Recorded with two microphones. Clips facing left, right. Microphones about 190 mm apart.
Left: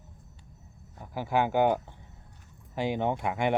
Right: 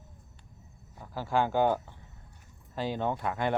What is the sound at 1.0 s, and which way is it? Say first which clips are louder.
Speech: left 1 dB; 15° left (ahead or behind).